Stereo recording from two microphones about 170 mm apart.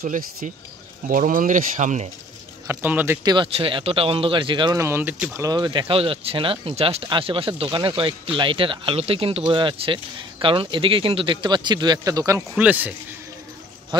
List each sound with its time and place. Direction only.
0.0 s speech: 60° right (ahead or behind)
2.6 s speech: 10° right (ahead or behind)
3.3 s speech: 30° right (ahead or behind); by 12.9 s 10° right (ahead or behind)